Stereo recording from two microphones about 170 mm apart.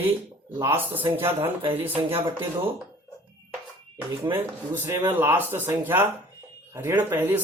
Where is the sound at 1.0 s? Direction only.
30° right (ahead or behind).